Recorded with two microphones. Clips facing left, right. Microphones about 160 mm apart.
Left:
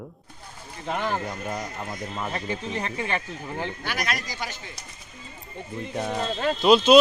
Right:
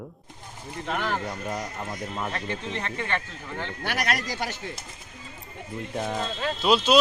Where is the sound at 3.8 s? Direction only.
65° right (ahead or behind).